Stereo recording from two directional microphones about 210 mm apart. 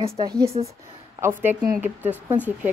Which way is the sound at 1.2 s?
10° right (ahead or behind).